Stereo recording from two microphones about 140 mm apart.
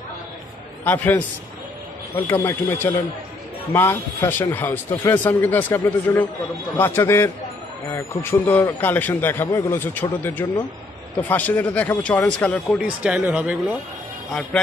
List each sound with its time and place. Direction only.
0.8 s a man's voice: 10° left (ahead or behind)
11.1 s a man's voice: 10° left (ahead or behind)
12.7 s speech: 10° right (ahead or behind)
14.5 s a man's voice: 5° left (ahead or behind)